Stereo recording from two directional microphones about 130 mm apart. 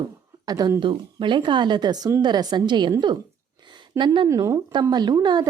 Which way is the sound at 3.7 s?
35° right (ahead or behind).